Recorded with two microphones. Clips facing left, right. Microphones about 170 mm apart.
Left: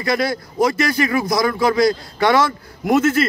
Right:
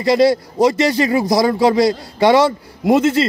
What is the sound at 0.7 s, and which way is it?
Speech, 25° right (ahead or behind).